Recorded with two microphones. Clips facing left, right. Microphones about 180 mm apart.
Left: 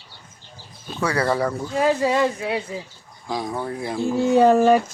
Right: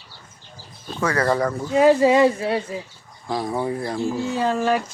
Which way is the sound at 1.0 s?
10° left (ahead or behind).